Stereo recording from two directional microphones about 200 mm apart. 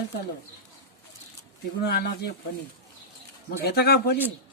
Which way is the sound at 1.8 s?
55° left (ahead or behind).